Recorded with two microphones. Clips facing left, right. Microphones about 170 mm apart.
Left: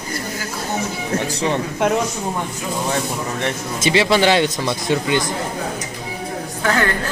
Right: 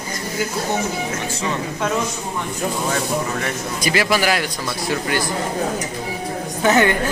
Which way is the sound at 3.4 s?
25° left (ahead or behind).